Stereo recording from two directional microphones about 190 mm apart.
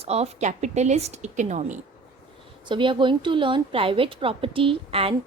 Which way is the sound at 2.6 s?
25° right (ahead or behind).